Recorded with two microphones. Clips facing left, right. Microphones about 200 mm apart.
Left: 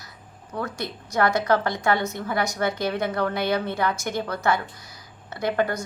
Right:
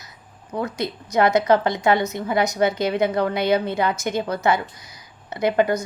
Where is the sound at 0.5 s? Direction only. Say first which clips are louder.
Right 5 dB; 20° right (ahead or behind).